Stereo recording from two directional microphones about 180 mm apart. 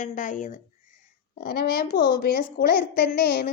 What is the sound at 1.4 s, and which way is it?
A woman's voice, 60° left (ahead or behind).